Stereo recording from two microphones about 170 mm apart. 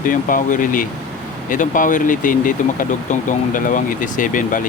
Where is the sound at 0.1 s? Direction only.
55° left (ahead or behind).